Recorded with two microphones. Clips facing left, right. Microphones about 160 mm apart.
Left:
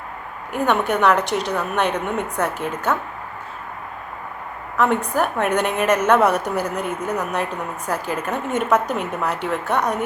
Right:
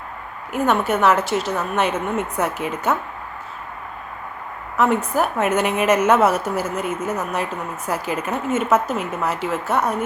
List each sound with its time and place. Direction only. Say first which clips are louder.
0.5 s a woman's voice: even; 5° right (ahead or behind)
4.8 s a woman's voice: right 1 dB; 5° right (ahead or behind)